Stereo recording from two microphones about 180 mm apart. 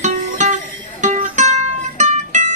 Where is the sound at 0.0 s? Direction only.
40° right (ahead or behind).